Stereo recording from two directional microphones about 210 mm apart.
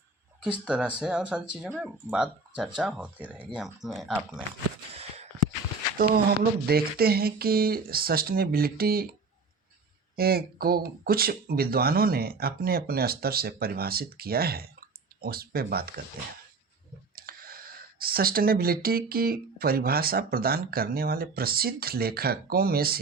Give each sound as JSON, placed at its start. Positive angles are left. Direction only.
{"t": 0.6, "sound": "speech", "side_deg": -5}
{"t": 4.9, "sound": "a sound", "side_deg": -30}
{"t": 6.7, "sound": "speech", "side_deg": -45}
{"t": 10.2, "sound": "speech", "side_deg": -45}
{"t": 17.2, "sound": "a sound", "side_deg": -45}
{"t": 18.0, "sound": "speech", "side_deg": -45}